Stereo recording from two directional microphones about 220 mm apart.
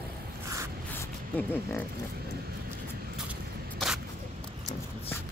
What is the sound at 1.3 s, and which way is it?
Speech, 5° left (ahead or behind).